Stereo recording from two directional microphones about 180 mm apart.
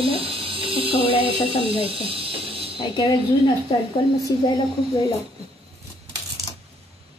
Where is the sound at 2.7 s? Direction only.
30° left (ahead or behind).